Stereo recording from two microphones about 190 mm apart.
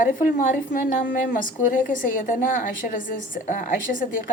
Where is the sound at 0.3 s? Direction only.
45° left (ahead or behind).